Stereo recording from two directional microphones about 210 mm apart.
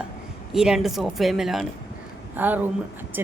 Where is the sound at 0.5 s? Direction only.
5° right (ahead or behind).